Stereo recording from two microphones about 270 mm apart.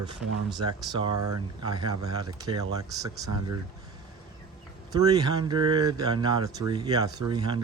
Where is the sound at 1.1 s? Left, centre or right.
Right.